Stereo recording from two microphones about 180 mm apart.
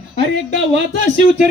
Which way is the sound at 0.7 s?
90° right.